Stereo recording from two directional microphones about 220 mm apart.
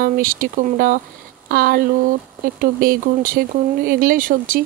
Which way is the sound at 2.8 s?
40° right (ahead or behind).